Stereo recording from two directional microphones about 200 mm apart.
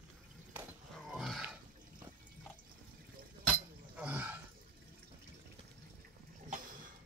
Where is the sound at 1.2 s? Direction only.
Centre (ahead or behind).